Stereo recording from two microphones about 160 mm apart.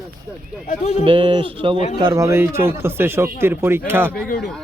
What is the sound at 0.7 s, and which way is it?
Speech, 45° left (ahead or behind).